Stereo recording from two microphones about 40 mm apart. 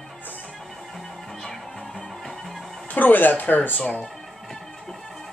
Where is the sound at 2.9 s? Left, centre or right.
Left.